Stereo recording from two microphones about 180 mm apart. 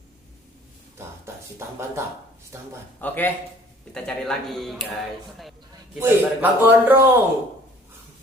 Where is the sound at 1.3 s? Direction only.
15° right (ahead or behind).